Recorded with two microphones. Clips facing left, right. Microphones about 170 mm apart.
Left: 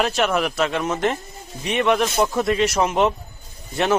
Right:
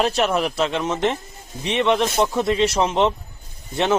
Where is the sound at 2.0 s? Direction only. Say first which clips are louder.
Even; centre (ahead or behind).